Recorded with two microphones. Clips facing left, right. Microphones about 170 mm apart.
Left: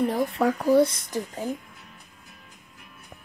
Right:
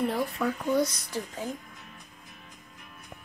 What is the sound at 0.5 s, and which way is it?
Speech, 35° left (ahead or behind).